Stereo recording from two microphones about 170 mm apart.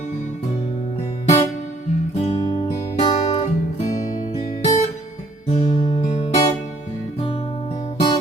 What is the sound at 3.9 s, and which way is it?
Music, 25° left (ahead or behind).